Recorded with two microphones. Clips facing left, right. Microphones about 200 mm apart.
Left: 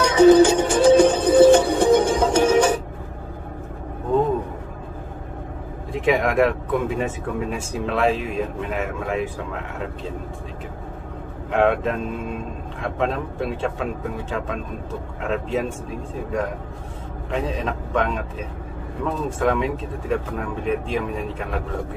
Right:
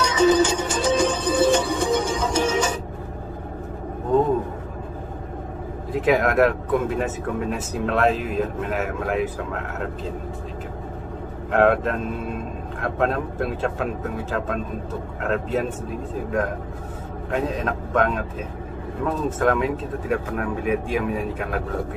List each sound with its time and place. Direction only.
0.1 s music: 60° left (ahead or behind)
5.9 s speech: centre (ahead or behind)
11.5 s speech: centre (ahead or behind)
15.2 s speech: centre (ahead or behind)
17.3 s speech: centre (ahead or behind)